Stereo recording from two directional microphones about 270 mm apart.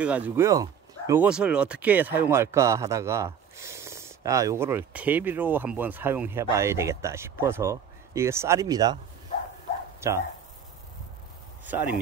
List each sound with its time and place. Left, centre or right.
0.0 s speech: centre
9.9 s bow-wow: centre